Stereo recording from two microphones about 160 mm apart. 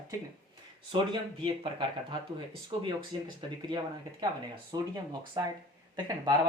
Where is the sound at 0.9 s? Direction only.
30° right (ahead or behind).